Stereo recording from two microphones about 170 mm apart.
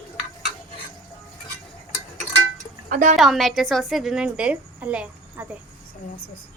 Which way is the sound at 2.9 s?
50° right (ahead or behind).